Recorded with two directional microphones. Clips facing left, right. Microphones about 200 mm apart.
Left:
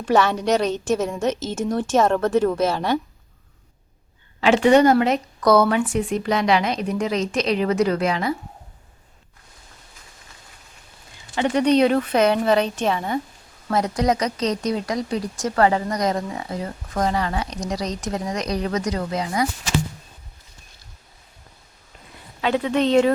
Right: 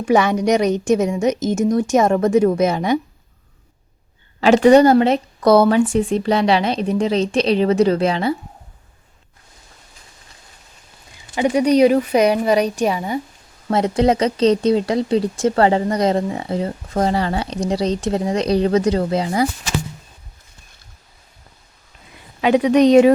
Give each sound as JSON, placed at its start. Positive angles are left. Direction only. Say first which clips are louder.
{"t": 0.0, "sound": "a woman's voice", "louder": "right 3 dB", "side_deg": -10}
{"t": 4.4, "sound": "speech", "louder": "right 4 dB", "side_deg": -40}
{"t": 11.3, "sound": "a woman's voice", "louder": "right 3 dB", "side_deg": -10}
{"t": 13.7, "sound": "speech", "louder": "right 5 dB", "side_deg": -25}
{"t": 22.4, "sound": "a woman's voice", "louder": "right 7 dB", "side_deg": -15}